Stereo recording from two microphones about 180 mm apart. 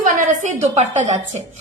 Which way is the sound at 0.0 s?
45° right (ahead or behind).